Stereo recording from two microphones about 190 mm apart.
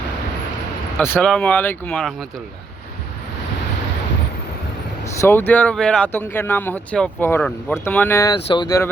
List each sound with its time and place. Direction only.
0.9 s speech: 10° left (ahead or behind)
5.2 s speech: 10° left (ahead or behind)